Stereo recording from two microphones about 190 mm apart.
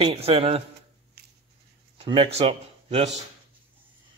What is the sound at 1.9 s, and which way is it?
Speech, 25° right (ahead or behind).